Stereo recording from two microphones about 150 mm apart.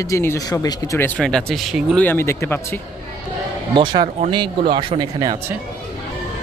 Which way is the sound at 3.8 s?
30° right (ahead or behind).